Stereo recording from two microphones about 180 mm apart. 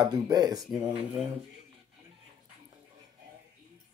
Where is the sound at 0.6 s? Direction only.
Centre (ahead or behind).